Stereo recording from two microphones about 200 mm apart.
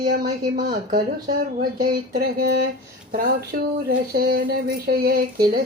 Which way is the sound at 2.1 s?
50° right (ahead or behind).